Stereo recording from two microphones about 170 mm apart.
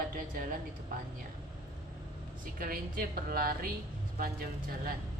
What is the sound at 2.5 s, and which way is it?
Speech, 60° right (ahead or behind).